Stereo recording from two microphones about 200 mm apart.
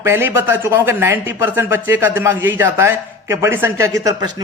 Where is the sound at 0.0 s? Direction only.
10° right (ahead or behind).